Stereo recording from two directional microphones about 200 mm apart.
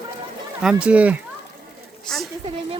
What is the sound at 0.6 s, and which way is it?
Speech, 5° right (ahead or behind).